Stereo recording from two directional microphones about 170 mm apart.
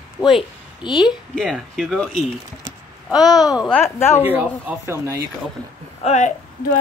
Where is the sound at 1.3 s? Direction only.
Centre (ahead or behind).